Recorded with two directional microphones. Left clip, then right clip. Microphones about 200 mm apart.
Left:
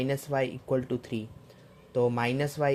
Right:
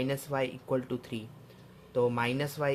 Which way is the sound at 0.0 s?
25° left (ahead or behind).